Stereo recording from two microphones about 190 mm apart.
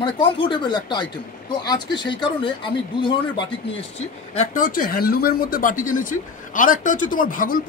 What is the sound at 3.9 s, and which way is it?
Speech, 35° left (ahead or behind).